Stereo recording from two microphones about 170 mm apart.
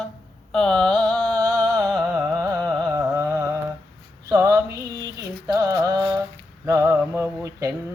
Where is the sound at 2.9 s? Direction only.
15° right (ahead or behind).